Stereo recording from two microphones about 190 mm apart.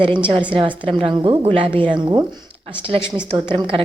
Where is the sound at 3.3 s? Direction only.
25° right (ahead or behind).